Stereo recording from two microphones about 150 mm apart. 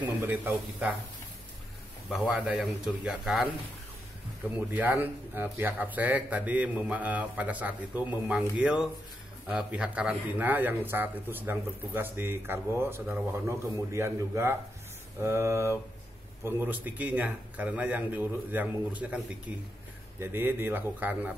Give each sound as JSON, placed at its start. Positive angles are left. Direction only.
{"t": 0.0, "sound": "speech", "side_deg": -10}
{"t": 2.0, "sound": "speech", "side_deg": -5}
{"t": 4.7, "sound": "speech", "side_deg": -10}